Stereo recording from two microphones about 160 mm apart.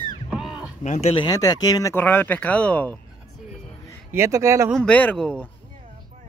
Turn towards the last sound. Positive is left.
turn(degrees=5)  # may be behind; listen again after turning